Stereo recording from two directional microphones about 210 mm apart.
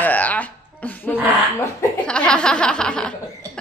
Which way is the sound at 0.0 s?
5° left (ahead or behind).